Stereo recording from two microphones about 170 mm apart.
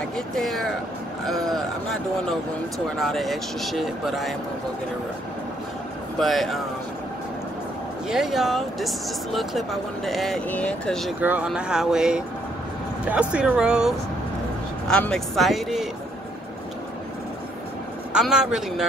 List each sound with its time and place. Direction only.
0.3 s speech: centre (ahead or behind)
3.0 s speech: centre (ahead or behind)
6.1 s speech: centre (ahead or behind)
8.1 s speech: centre (ahead or behind)
11.1 s speech: 10° right (ahead or behind)
18.1 s speech: 5° right (ahead or behind)